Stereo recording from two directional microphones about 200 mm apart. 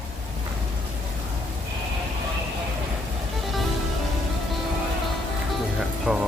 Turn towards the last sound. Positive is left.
turn(degrees=-5)  # may be behind; listen again after turning